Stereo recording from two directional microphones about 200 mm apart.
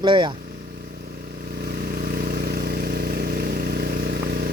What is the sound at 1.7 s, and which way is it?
Vehicle, 50° right (ahead or behind).